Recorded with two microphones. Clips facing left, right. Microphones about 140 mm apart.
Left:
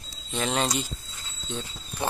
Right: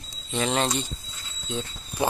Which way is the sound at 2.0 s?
10° right (ahead or behind).